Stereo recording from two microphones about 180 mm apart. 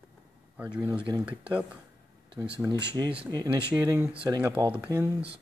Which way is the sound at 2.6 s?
20° right (ahead or behind).